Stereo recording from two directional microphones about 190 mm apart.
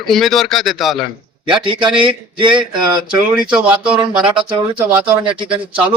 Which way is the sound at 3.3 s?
5° right (ahead or behind).